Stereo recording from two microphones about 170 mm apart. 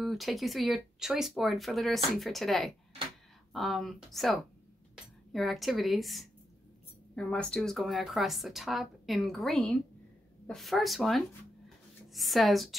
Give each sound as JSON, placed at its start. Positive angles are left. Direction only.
{"t": 0.0, "sound": "speech", "side_deg": 0}